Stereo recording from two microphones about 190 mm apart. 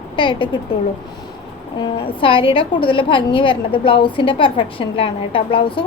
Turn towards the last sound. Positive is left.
turn(degrees=25)  # may be behind; listen again after turning